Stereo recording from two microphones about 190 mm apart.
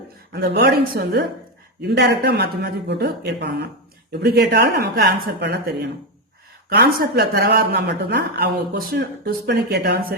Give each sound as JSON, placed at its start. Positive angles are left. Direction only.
{"t": 0.3, "sound": "speech", "side_deg": -60}